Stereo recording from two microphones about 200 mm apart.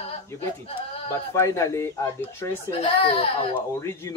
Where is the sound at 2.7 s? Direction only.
30° left (ahead or behind).